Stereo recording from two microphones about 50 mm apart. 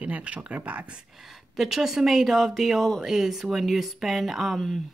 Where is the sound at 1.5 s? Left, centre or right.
Centre.